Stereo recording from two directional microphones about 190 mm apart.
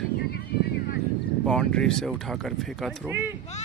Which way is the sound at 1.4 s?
5° left (ahead or behind).